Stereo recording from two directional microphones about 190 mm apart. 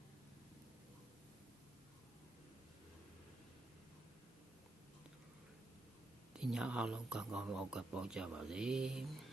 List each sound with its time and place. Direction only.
6.3 s speech: 5° right (ahead or behind)